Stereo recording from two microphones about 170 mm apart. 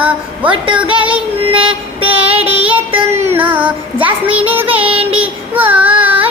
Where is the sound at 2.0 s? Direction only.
10° right (ahead or behind).